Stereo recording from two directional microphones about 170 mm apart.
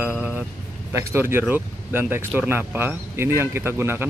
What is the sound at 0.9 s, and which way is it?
Speech, 15° right (ahead or behind).